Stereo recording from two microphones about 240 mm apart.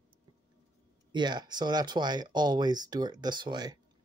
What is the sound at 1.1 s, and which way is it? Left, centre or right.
Speech, centre.